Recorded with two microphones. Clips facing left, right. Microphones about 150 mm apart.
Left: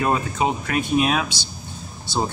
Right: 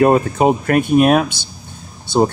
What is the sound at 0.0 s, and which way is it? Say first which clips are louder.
Speech: right 9 dB; 50° right (ahead or behind).